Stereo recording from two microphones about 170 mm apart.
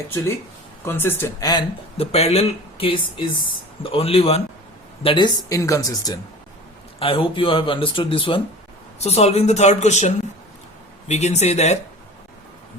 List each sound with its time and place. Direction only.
0.9 s speech: 15° left (ahead or behind)
2.0 s speech: 40° left (ahead or behind); by 6.1 s 20° left (ahead or behind)
7.0 s speech: 30° left (ahead or behind)
11.1 s speech: 40° left (ahead or behind)